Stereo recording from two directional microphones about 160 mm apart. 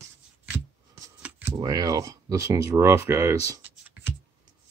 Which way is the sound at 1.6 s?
20° right (ahead or behind).